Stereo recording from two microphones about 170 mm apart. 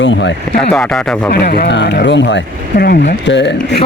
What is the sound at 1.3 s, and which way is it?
Speech, 65° left (ahead or behind).